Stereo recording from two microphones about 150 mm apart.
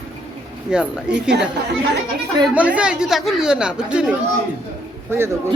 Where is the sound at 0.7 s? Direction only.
5° right (ahead or behind).